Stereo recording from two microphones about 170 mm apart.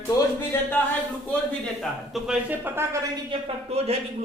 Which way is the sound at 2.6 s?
15° right (ahead or behind).